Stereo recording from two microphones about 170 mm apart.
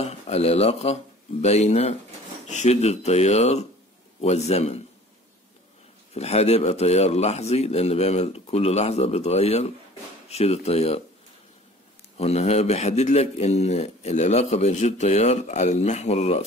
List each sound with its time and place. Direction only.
0.0 s a man's voice: 40° left (ahead or behind)
6.1 s a man's voice: 40° left (ahead or behind)
12.2 s a man's voice: 40° left (ahead or behind)